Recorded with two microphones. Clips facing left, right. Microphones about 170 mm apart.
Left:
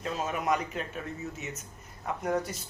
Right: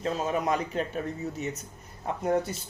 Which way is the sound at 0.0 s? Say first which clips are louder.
Right 4 dB; 30° right (ahead or behind).